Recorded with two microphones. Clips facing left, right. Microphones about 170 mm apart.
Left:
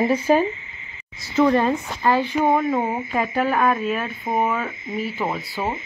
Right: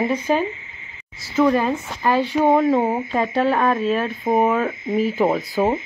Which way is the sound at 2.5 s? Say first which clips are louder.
Right 6 dB; 30° right (ahead or behind).